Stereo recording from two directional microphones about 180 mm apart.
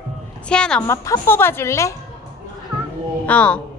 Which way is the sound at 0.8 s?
15° left (ahead or behind).